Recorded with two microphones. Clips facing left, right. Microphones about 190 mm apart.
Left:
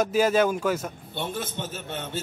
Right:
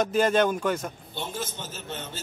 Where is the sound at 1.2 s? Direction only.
60° left (ahead or behind).